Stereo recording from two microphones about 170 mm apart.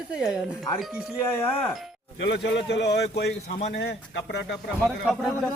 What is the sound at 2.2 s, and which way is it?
A man's voice, 90° left.